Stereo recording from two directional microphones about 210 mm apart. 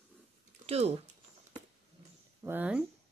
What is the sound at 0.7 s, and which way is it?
Speech, 30° right (ahead or behind).